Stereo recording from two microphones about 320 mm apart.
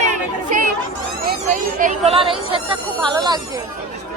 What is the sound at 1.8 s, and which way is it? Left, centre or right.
Speech, right.